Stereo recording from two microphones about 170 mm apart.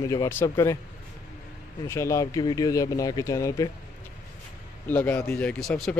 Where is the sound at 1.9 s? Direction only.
15° left (ahead or behind).